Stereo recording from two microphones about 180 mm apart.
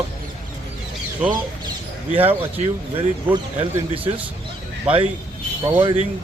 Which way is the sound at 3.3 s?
10° right (ahead or behind).